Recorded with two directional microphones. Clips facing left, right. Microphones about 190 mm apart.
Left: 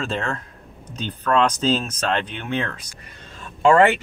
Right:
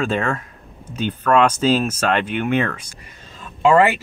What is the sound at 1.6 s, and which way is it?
Speech, 10° right (ahead or behind).